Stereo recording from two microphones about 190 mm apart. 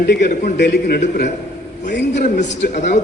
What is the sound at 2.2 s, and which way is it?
Speech, 40° left (ahead or behind).